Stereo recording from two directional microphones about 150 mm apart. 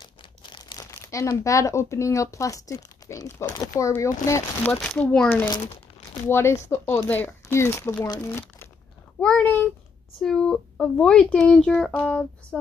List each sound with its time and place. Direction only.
0.0 s speech: 30° left (ahead or behind); by 12.5 s 5° left (ahead or behind)